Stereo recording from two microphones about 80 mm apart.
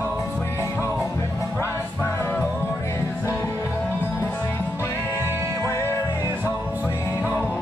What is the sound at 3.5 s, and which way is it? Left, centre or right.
Music, right.